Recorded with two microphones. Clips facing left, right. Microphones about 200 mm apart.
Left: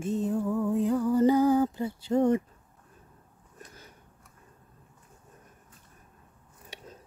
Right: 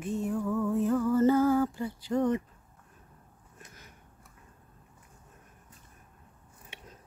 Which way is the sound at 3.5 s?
30° left (ahead or behind).